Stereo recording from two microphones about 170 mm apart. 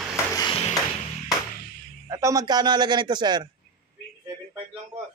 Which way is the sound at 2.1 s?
20° right (ahead or behind).